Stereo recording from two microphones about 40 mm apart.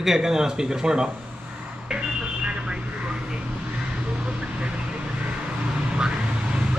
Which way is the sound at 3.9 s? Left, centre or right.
Right.